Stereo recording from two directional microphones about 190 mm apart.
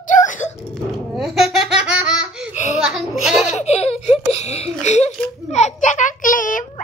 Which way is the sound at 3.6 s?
35° left (ahead or behind).